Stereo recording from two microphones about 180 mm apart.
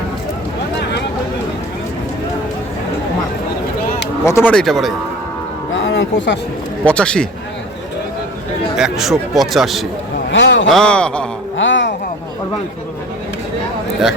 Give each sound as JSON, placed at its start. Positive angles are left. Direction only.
{"t": 4.3, "sound": "speech", "side_deg": 10}
{"t": 5.7, "sound": "music", "side_deg": 90}
{"t": 6.8, "sound": "speech", "side_deg": 5}
{"t": 8.7, "sound": "speech", "side_deg": 0}
{"t": 10.3, "sound": "a man's voice", "side_deg": 90}
{"t": 10.7, "sound": "speech", "side_deg": 5}
{"t": 11.5, "sound": "a sound", "side_deg": 90}